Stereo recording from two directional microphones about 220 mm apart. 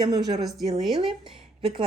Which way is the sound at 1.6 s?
25° right (ahead or behind).